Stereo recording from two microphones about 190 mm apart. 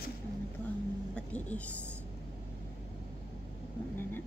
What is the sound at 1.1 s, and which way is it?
Speech, 5° left (ahead or behind).